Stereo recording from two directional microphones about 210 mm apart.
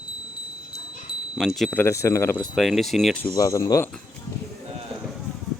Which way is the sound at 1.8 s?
15° left (ahead or behind).